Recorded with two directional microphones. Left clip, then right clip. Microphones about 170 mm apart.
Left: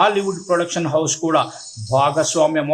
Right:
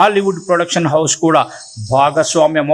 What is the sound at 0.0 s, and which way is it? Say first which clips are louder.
Speech: right 5 dB; 25° right (ahead or behind).